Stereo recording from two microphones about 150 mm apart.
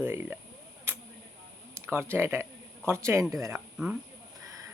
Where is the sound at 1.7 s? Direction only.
15° right (ahead or behind).